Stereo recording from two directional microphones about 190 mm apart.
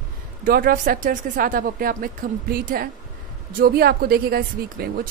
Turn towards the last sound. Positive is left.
turn(degrees=-55)  # may be behind; listen again after turning